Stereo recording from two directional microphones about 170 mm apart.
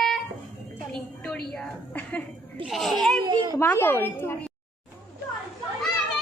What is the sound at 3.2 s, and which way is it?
Speech, 25° right (ahead or behind).